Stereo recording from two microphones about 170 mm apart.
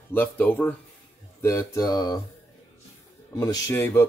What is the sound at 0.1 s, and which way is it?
Speech, 10° left (ahead or behind).